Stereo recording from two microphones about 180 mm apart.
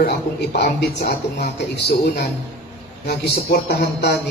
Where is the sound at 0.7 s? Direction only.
60° left (ahead or behind).